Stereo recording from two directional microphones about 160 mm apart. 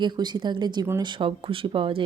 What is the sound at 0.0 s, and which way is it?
Speech, 30° right (ahead or behind).